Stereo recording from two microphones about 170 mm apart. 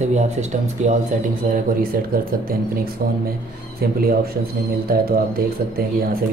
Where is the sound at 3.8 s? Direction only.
60° right (ahead or behind).